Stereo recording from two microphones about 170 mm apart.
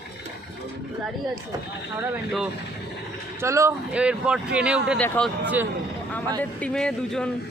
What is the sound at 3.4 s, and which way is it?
Speech, 15° right (ahead or behind).